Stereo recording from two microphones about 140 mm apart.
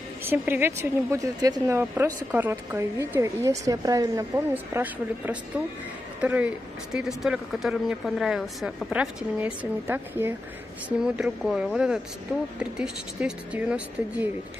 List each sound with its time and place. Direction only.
0.2 s a woman's voice: 15° right (ahead or behind)
4.7 s speech: 15° right (ahead or behind)